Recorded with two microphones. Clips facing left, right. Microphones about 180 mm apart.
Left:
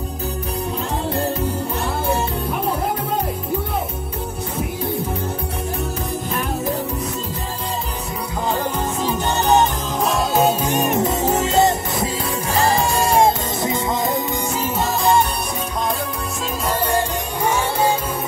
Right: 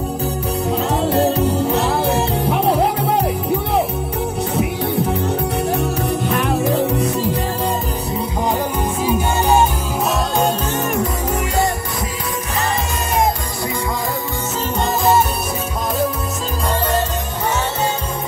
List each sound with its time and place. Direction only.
1.7 s music: 80° right
5.7 s music: 70° right (ahead or behind)
9.0 s music: 10° right (ahead or behind)
10.7 s music: 20° left (ahead or behind)